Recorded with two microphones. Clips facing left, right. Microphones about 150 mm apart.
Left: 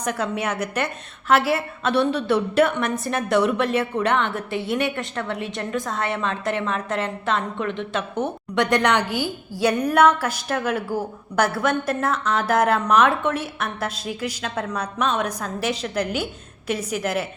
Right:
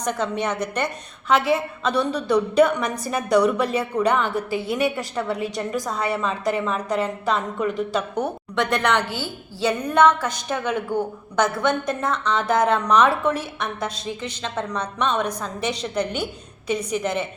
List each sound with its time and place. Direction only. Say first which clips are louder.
0.0 s a woman's voice: right 1 dB; 5° left (ahead or behind)
8.7 s a woman's voice: left 2 dB; 15° left (ahead or behind)
16.6 s a woman's voice: right 1 dB; 5° left (ahead or behind)